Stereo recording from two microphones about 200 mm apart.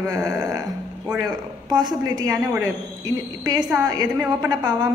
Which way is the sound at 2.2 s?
15° right (ahead or behind).